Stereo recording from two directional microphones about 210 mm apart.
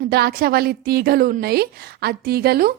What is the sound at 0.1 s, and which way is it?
A woman's voice, 50° right (ahead or behind).